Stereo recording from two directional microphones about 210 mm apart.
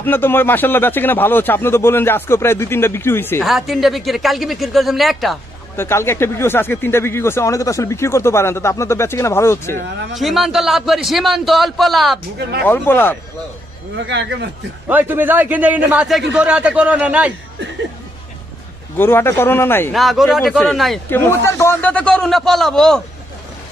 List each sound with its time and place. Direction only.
0.0 s speech: 10° left (ahead or behind)
3.4 s a man's voice: centre (ahead or behind)
5.8 s speech: 10° left (ahead or behind)
10.1 s a man's voice: centre (ahead or behind)
12.4 s speech: 50° right (ahead or behind)
12.6 s speech: 10° left (ahead or behind)
13.9 s speech: 55° right (ahead or behind)
14.9 s a man's voice: 10° right (ahead or behind)
18.9 s speech: 10° left (ahead or behind)
19.9 s a man's voice: centre (ahead or behind)